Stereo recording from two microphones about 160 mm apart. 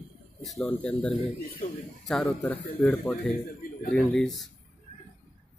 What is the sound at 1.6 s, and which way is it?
Speech, 50° left (ahead or behind).